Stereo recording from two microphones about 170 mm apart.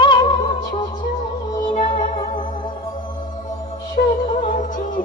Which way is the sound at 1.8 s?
45° left (ahead or behind).